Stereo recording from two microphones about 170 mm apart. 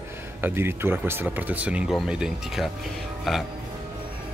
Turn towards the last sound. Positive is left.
turn(degrees=0)  # may be behind; listen again after turning